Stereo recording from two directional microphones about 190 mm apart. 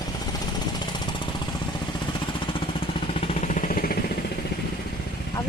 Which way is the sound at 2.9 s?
35° left (ahead or behind).